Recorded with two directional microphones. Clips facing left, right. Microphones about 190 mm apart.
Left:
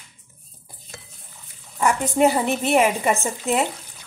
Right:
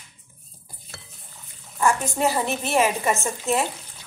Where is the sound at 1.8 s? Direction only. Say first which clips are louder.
Left 4 dB; 20° left (ahead or behind).